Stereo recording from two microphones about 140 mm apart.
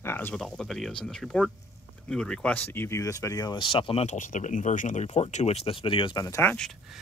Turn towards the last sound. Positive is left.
turn(degrees=5)  # may be behind; listen again after turning